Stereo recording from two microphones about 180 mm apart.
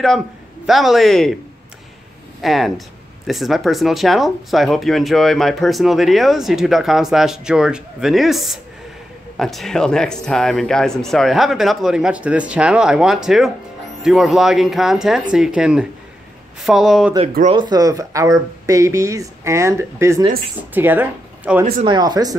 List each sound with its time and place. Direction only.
0.7 s speech: centre (ahead or behind)
2.4 s speech: centre (ahead or behind)
17.5 s speech: 25° right (ahead or behind)
21.8 s speech: 25° right (ahead or behind)